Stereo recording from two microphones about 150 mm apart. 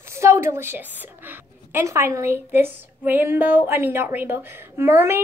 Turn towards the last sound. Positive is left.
turn(degrees=-15)  # may be behind; listen again after turning